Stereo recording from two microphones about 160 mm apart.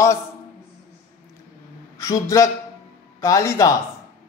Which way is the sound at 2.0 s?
20° left (ahead or behind).